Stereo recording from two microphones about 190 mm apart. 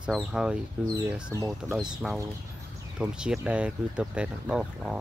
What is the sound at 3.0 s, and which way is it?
Speech, 5° right (ahead or behind).